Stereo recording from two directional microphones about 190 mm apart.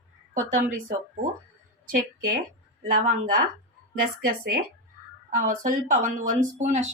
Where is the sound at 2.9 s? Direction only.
45° right (ahead or behind).